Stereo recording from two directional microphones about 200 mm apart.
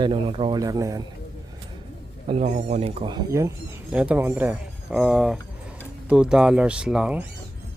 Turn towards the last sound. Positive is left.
turn(degrees=-5)  # may be behind; listen again after turning